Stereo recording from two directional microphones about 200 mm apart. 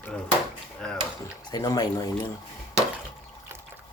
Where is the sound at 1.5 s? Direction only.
20° left (ahead or behind).